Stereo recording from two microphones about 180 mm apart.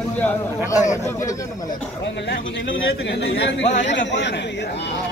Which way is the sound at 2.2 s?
80° left.